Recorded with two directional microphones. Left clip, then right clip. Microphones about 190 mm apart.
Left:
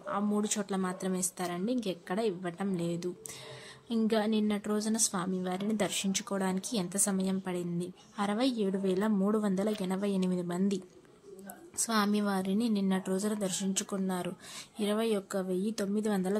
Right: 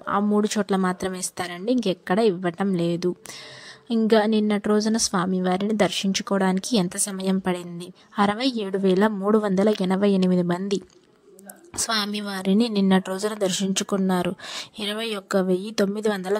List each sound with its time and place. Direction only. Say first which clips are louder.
0.0 s speech: right 11 dB; 40° right (ahead or behind)
4.1 s a woman's voice: right 12 dB; 40° right (ahead or behind)